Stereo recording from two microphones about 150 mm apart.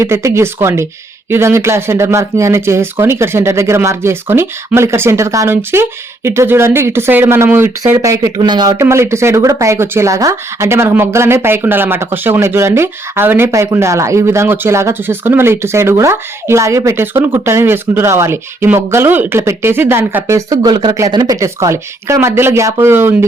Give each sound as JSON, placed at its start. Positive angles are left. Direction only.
{"t": 0.0, "sound": "speech", "side_deg": -20}